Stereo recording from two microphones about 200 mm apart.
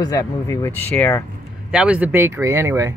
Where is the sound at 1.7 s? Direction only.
5° right (ahead or behind).